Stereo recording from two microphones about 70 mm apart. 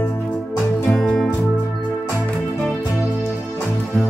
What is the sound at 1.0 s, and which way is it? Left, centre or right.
Music, centre.